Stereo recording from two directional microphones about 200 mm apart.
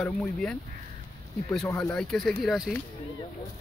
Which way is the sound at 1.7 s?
15° left (ahead or behind).